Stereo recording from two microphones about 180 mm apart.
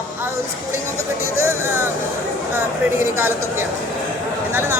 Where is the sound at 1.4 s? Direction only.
15° right (ahead or behind).